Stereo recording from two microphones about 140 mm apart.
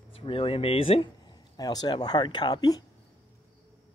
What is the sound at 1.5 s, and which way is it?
Speech, 30° left (ahead or behind).